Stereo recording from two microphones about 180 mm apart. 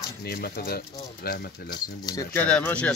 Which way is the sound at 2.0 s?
20° left (ahead or behind).